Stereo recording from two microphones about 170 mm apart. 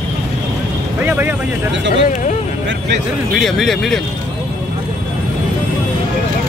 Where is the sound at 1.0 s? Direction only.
10° right (ahead or behind).